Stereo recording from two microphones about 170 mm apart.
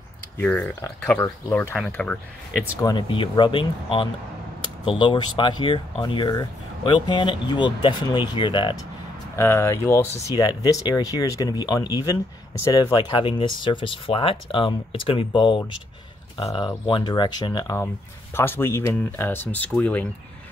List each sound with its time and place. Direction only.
0.4 s speech: 10° left (ahead or behind)
2.8 s speech: 25° left (ahead or behind)
9.4 s speech: 15° left (ahead or behind)